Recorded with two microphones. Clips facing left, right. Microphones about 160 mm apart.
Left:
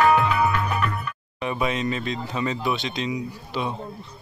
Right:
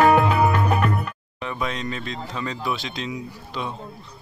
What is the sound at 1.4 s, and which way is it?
Speech, 10° left (ahead or behind).